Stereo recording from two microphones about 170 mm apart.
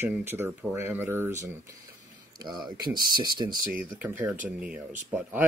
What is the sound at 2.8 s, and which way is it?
Speech, 25° right (ahead or behind).